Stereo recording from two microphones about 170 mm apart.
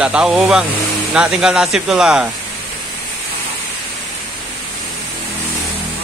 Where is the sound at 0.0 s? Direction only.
5° right (ahead or behind).